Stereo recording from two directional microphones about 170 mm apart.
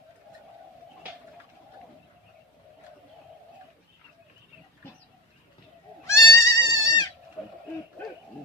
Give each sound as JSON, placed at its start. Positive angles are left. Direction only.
{"t": 6.1, "sound": "goat", "side_deg": 20}